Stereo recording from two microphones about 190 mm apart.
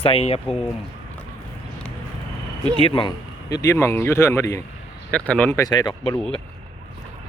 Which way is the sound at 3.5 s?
15° left (ahead or behind).